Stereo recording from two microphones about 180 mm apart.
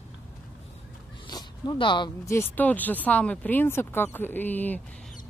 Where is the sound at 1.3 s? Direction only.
25° left (ahead or behind).